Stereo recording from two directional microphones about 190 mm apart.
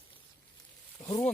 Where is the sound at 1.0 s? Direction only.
25° left (ahead or behind).